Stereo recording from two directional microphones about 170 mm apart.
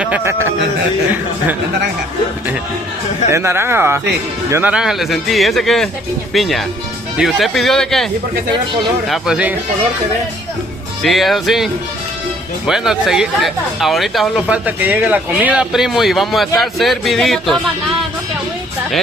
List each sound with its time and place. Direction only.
0.0 s speech: 10° right (ahead or behind)
3.3 s speech: 15° right (ahead or behind); by 8.1 s 5° left (ahead or behind)
9.1 s speech: 5° right (ahead or behind)
11.0 s speech: centre (ahead or behind)